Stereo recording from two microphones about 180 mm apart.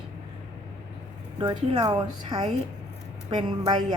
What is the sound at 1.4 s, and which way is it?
A woman's voice, 25° right (ahead or behind).